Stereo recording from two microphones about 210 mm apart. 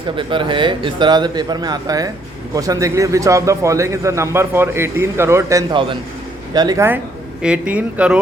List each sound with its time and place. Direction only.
0.2 s a man's voice: 25° right (ahead or behind); by 8.2 s 5° right (ahead or behind)